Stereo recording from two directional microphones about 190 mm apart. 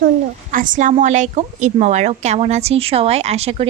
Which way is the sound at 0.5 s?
45° right (ahead or behind).